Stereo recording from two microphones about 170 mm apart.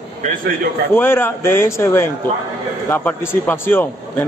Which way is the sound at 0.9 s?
15° left (ahead or behind).